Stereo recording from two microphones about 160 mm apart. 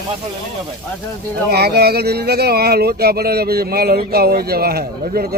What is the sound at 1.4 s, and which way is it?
Speech, 80° right.